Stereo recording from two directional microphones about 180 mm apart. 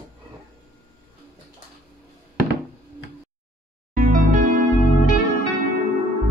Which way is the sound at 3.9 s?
50° right (ahead or behind).